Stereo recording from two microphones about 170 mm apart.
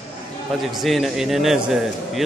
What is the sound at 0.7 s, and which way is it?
A man's voice, centre (ahead or behind).